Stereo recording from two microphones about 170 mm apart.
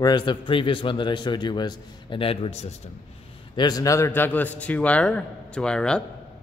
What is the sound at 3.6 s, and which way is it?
A man's voice, 20° left (ahead or behind).